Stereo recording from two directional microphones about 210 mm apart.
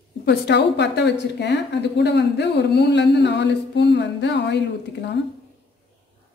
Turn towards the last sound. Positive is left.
turn(degrees=55)  # may be behind; listen again after turning